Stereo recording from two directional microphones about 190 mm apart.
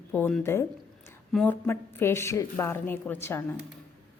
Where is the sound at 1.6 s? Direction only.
10° left (ahead or behind).